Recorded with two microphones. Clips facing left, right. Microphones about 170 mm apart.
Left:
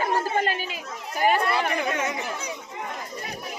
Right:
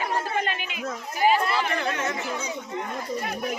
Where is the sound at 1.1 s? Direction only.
50° left (ahead or behind).